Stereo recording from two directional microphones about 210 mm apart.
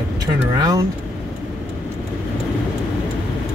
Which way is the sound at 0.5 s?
20° right (ahead or behind).